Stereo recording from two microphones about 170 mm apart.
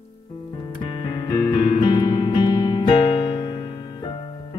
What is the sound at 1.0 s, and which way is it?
Music, 30° left (ahead or behind).